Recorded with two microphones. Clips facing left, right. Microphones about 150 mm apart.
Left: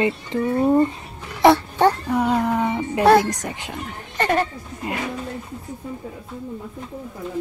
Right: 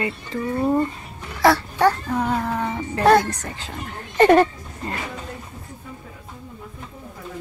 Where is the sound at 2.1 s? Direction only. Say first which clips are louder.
Left 3 dB; 10° left (ahead or behind).